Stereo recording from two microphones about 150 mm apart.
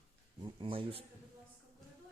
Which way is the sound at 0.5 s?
35° right (ahead or behind).